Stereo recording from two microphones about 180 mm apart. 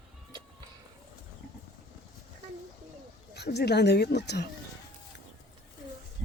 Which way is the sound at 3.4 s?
65° left (ahead or behind).